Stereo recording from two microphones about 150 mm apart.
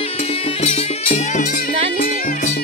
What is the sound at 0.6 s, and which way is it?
Music, 45° left (ahead or behind).